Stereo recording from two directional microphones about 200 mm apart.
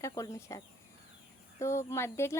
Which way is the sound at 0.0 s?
15° left (ahead or behind).